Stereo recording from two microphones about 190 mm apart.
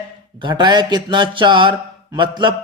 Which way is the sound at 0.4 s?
25° right (ahead or behind).